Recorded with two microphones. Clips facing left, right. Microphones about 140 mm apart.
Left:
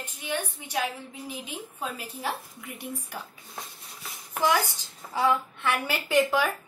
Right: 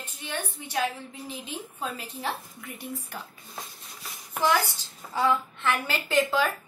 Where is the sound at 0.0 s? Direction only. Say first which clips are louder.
Left 3 dB; 10° left (ahead or behind).